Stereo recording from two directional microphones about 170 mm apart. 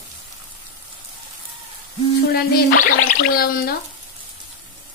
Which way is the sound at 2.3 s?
55° left (ahead or behind).